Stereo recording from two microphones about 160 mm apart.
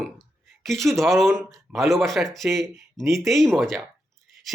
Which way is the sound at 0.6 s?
Centre (ahead or behind).